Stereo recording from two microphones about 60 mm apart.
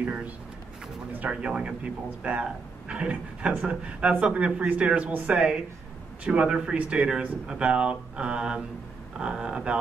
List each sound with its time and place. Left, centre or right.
0.0 s a man's voice: centre